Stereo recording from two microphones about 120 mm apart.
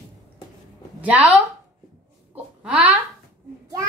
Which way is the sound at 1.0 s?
10° right (ahead or behind).